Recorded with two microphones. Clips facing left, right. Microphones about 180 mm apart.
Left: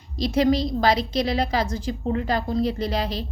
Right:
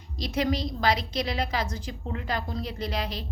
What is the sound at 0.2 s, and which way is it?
A woman's voice, 30° left (ahead or behind).